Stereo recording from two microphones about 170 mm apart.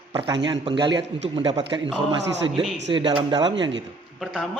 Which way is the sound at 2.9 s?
25° right (ahead or behind).